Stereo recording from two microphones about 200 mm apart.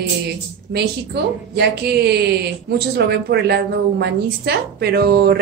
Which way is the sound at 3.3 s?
55° right (ahead or behind).